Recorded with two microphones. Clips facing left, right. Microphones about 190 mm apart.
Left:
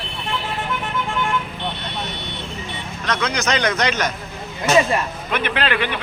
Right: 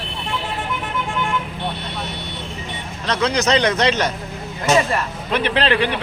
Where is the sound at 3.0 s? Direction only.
30° right (ahead or behind).